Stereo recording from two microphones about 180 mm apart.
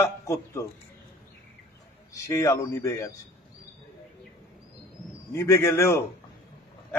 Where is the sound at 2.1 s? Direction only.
15° left (ahead or behind).